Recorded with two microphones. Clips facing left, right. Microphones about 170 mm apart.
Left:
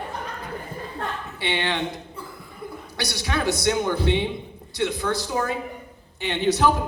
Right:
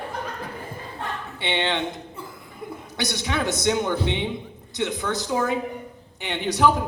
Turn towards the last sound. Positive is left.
turn(degrees=-15)  # may be behind; listen again after turning